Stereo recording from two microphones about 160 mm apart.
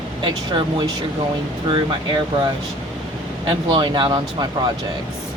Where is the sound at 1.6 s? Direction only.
30° right (ahead or behind).